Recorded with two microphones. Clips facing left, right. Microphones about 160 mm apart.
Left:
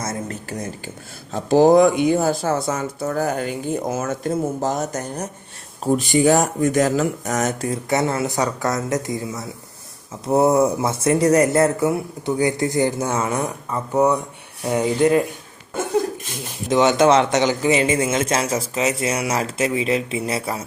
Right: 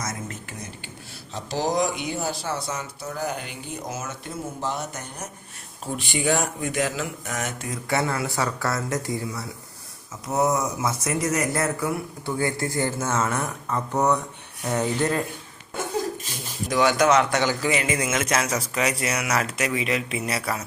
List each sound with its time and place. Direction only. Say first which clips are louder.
0.0 s speech: left 5 dB; 35° left (ahead or behind)
1.3 s speech: left 13 dB; 50° left (ahead or behind)
7.9 s a man's voice: left 4 dB; 20° left (ahead or behind)
10.2 s a man's voice: left 7 dB; 30° left (ahead or behind); by 14.2 s 10° left (ahead or behind)
14.6 s rub: left 6 dB; 10° left (ahead or behind)
16.6 s a man's voice: left 5 dB; 25° left (ahead or behind)